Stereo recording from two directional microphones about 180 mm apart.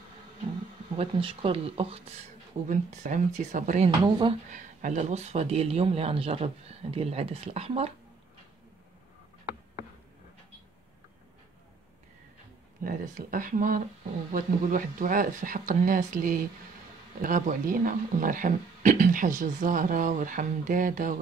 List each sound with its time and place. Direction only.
0.9 s speech: 30° right (ahead or behind)
4.0 s speech: 25° right (ahead or behind)
4.5 s speech: 45° right (ahead or behind)
12.8 s speech: 50° right (ahead or behind)